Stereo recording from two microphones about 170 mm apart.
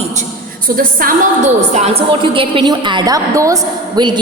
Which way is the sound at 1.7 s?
40° right (ahead or behind).